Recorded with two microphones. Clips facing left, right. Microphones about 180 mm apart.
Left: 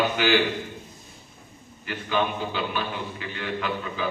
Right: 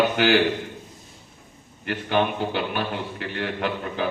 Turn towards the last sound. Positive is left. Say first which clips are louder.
# right 2 dB
turn(degrees=-60)  # may be behind; listen again after turning